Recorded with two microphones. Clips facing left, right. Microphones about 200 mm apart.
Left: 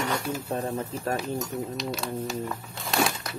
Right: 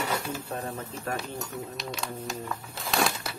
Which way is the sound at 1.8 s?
Centre (ahead or behind).